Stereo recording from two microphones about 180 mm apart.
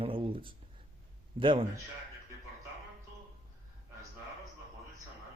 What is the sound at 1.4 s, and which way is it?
Speech, 25° right (ahead or behind).